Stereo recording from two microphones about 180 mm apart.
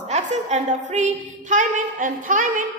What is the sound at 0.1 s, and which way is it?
A woman's voice, 40° right (ahead or behind).